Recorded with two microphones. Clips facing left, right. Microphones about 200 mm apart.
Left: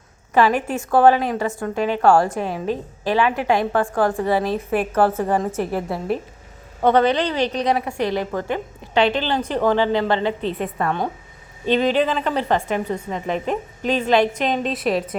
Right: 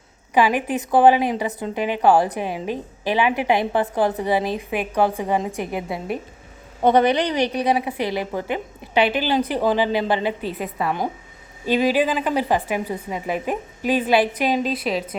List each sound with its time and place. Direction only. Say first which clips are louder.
0.3 s a woman's voice: left 1 dB; 15° right (ahead or behind)
5.5 s a woman's voice: left 3 dB; centre (ahead or behind)
6.8 s a woman's voice: even; 15° right (ahead or behind)